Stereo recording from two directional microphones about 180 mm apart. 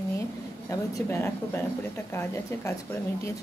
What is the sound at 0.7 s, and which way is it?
A woman's voice, 15° left (ahead or behind).